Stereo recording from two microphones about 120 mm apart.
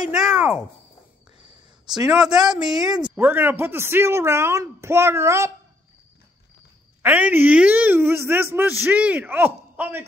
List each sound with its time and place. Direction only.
0.0 s speech: 5° right (ahead or behind)
2.0 s speech: 5° right (ahead or behind)
3.2 s speech: 15° right (ahead or behind)
7.0 s speech: 15° right (ahead or behind)